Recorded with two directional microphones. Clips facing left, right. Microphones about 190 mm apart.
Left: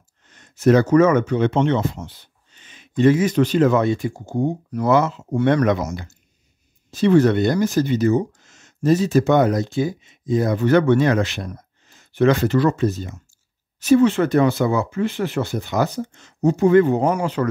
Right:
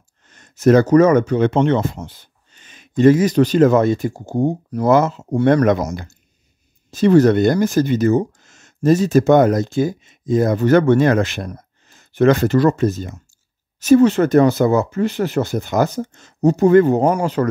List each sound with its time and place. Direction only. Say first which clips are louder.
0.3 s speech: right 3 dB; 45° right (ahead or behind)